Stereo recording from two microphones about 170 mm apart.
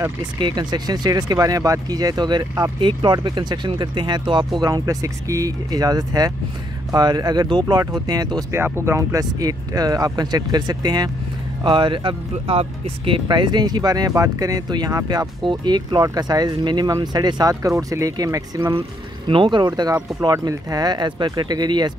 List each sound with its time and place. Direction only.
0.4 s speech: 25° right (ahead or behind)
18.8 s speech: 30° right (ahead or behind)